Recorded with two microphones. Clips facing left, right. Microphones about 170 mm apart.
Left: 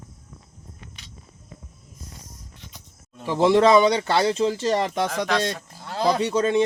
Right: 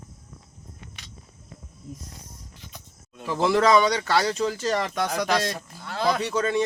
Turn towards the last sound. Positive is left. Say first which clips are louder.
# left 4 dB
turn(degrees=25)  # may be behind; listen again after turning